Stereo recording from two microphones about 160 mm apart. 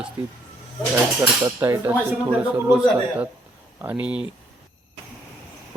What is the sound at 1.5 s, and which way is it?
Speech, 15° right (ahead or behind).